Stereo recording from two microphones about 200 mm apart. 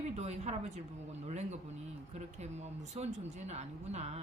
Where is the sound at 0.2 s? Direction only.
35° right (ahead or behind).